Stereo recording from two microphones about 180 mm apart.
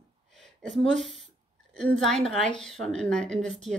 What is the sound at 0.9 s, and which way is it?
Speech, centre (ahead or behind).